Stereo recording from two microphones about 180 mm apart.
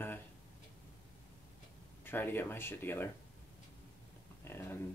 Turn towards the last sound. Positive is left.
turn(degrees=15)  # may be behind; listen again after turning